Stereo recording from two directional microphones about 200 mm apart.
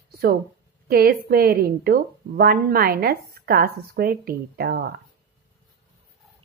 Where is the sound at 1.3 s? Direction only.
50° right (ahead or behind).